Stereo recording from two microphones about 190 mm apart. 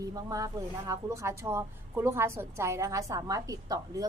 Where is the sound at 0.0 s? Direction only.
20° right (ahead or behind).